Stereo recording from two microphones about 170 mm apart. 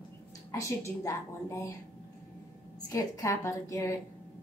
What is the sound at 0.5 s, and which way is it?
A woman's voice, 15° left (ahead or behind).